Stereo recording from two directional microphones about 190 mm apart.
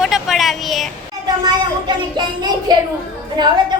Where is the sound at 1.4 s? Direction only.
25° right (ahead or behind).